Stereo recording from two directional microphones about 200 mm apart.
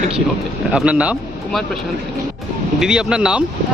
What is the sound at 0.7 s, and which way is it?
Speech, 5° right (ahead or behind).